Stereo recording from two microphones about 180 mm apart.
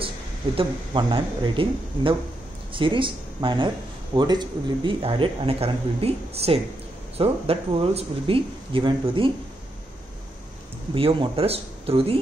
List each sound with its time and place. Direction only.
0.6 s speech: 30° right (ahead or behind)
11.0 s speech: 30° right (ahead or behind)